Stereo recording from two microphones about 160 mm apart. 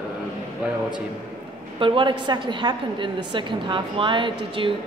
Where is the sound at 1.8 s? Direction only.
30° right (ahead or behind).